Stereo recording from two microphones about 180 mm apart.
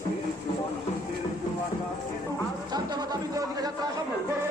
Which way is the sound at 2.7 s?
20° right (ahead or behind).